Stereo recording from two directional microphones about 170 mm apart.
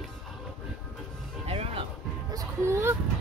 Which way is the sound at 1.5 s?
35° right (ahead or behind).